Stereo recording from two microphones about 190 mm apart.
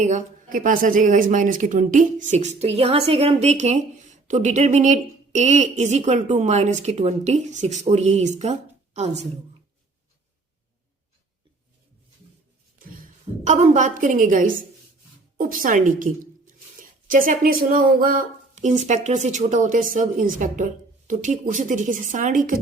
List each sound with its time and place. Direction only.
0.0 s a woman's voice: 40° right (ahead or behind)
13.5 s speech: 40° right (ahead or behind)